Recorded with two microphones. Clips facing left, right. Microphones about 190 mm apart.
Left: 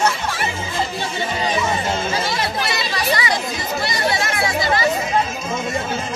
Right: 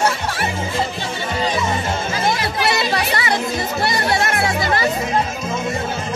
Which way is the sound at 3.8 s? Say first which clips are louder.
Right 2 dB; 60° right (ahead or behind).